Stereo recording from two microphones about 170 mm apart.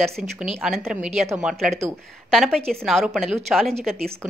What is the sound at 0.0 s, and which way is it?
A woman's voice, centre (ahead or behind).